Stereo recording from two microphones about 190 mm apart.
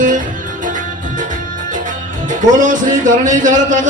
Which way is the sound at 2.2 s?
40° right (ahead or behind).